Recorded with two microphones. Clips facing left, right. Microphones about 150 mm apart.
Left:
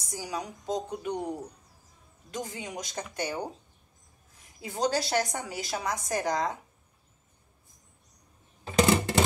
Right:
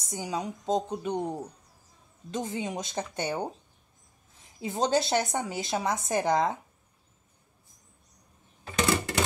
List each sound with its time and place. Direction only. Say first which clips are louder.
0.0 s a woman's voice: right 3 dB; 20° right (ahead or behind)